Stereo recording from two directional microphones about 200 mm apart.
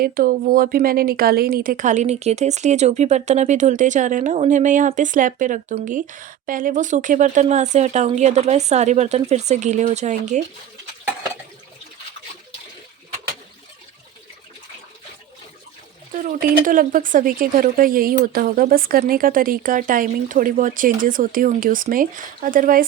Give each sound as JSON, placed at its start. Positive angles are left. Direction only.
{"t": 0.0, "sound": "a woman's voice", "side_deg": -45}
{"t": 16.1, "sound": "speech", "side_deg": -45}